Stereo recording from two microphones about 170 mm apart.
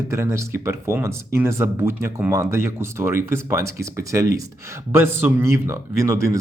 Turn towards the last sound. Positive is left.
turn(degrees=-20)  # may be behind; listen again after turning